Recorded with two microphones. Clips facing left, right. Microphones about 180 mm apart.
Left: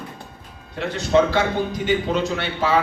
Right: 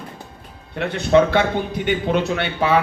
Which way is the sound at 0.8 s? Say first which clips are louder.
Right 2 dB; 60° right (ahead or behind).